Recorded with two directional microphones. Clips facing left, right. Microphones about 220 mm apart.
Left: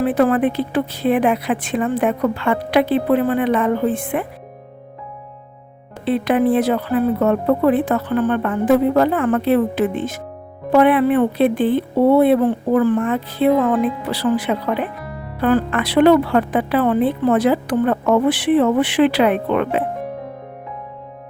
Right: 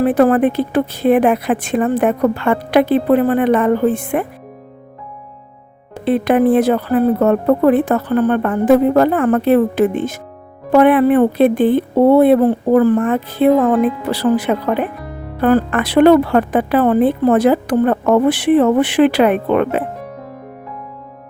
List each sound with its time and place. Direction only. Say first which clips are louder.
0.0 s speech: right 4 dB; 45° right (ahead or behind)
6.1 s speech: right 3 dB; 50° right (ahead or behind)